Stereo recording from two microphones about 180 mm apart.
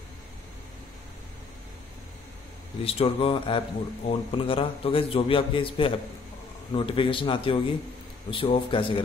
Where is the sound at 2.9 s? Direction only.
30° left (ahead or behind).